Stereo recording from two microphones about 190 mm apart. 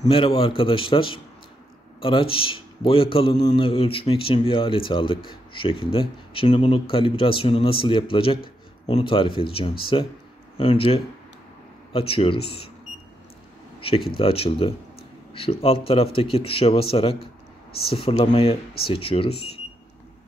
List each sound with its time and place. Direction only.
0.0 s a man's voice: 30° left (ahead or behind)
13.7 s a man's voice: 30° left (ahead or behind)